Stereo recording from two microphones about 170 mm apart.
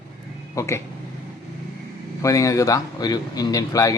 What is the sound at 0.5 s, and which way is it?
Speech, 15° left (ahead or behind).